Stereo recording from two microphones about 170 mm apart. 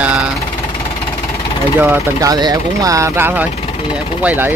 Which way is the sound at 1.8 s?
15° right (ahead or behind).